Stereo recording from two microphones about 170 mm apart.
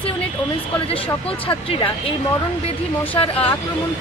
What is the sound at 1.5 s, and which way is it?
Speech, 30° left (ahead or behind).